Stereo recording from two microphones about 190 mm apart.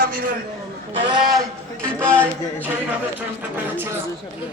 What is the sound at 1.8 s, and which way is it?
Speech, 5° left (ahead or behind).